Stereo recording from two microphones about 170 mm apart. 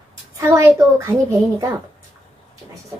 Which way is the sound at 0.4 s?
15° right (ahead or behind).